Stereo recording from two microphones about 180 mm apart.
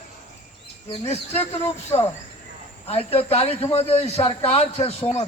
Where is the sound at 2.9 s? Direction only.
35° left (ahead or behind).